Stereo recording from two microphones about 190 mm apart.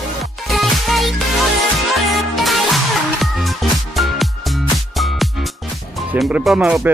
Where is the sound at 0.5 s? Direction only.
Centre (ahead or behind).